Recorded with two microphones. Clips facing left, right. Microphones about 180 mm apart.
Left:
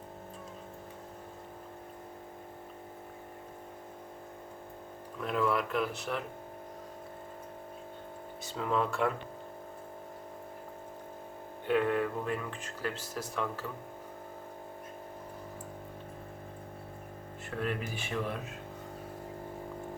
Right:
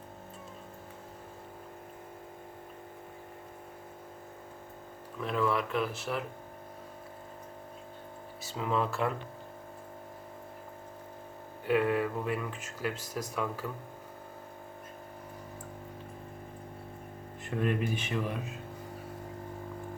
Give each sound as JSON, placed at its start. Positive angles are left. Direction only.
{"t": 5.2, "sound": "speech", "side_deg": 0}
{"t": 8.4, "sound": "speech", "side_deg": 0}
{"t": 11.6, "sound": "speech", "side_deg": -5}
{"t": 17.4, "sound": "speech", "side_deg": -15}
{"t": 18.3, "sound": "speech", "side_deg": -5}